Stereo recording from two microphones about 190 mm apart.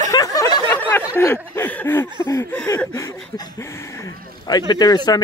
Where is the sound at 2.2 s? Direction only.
15° left (ahead or behind).